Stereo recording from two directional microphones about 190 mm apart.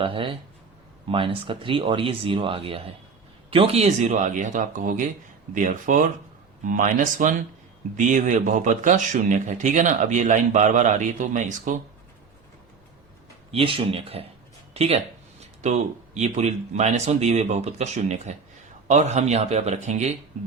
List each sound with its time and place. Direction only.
0.0 s speech: 25° right (ahead or behind)
13.5 s speech: 30° right (ahead or behind)